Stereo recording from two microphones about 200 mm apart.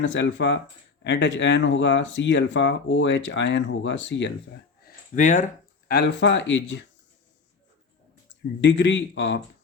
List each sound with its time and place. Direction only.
0.0 s speech: 65° left (ahead or behind)
5.1 s speech: 40° left (ahead or behind)
5.9 s speech: 55° left (ahead or behind)
8.6 s speech: 65° left (ahead or behind)